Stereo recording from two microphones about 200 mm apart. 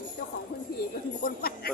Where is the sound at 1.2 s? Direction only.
50° left (ahead or behind).